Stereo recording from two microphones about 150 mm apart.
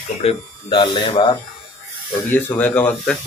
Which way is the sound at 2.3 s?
10° left (ahead or behind).